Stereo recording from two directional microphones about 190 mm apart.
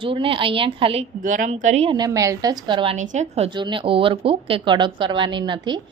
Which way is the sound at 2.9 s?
40° right (ahead or behind).